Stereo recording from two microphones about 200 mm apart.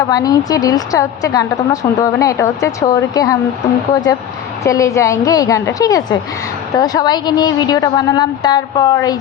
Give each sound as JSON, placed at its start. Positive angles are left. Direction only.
{"t": 0.1, "sound": "a woman's voice", "side_deg": 20}
{"t": 4.6, "sound": "a woman's voice", "side_deg": 15}